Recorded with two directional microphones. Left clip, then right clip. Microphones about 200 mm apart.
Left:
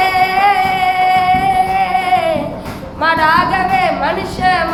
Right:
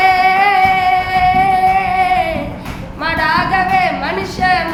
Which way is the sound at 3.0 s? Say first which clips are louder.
Left 3 dB; 20° right (ahead or behind).